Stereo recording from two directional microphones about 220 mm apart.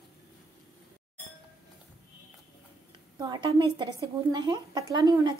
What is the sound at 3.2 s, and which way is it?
A woman's voice, 20° right (ahead or behind).